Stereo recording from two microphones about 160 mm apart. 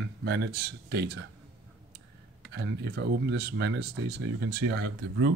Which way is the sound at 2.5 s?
90° right.